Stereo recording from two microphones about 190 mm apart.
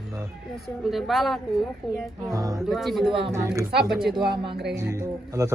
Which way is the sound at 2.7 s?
Centre (ahead or behind).